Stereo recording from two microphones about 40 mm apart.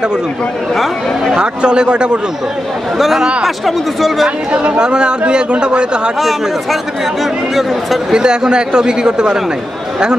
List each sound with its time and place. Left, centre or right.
1.3 s a man's voice: right
3.0 s speech: centre
4.5 s a man's voice: right
6.1 s speech: centre
8.1 s a man's voice: centre